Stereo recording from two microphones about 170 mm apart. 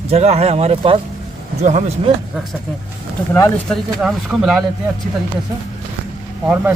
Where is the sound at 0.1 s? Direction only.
40° right (ahead or behind).